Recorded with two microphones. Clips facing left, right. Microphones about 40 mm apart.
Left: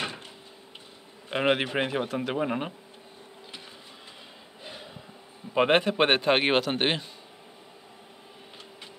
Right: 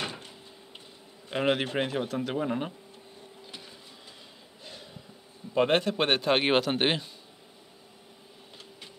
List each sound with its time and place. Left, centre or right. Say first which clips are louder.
0.0 s a sound: left 2 dB; centre
1.3 s speech: left 2 dB; centre
5.5 s a man's voice: left 2 dB; centre